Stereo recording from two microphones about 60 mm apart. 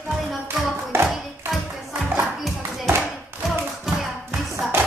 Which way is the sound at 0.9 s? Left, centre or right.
Right.